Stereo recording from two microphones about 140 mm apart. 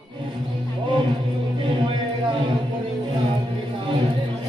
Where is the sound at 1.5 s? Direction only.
35° right (ahead or behind).